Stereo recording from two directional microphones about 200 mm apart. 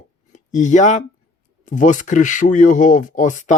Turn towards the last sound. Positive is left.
turn(degrees=40)  # may be behind; listen again after turning